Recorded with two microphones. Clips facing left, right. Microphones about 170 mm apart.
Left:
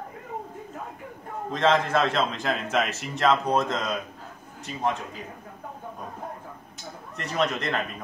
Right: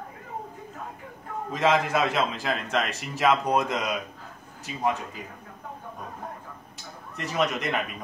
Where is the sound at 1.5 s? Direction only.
5° right (ahead or behind).